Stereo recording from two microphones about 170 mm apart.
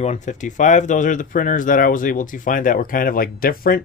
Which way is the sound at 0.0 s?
45° left (ahead or behind).